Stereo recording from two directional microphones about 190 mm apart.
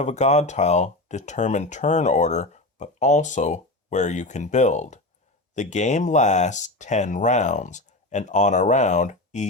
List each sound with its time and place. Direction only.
0.0 s speech: 35° left (ahead or behind)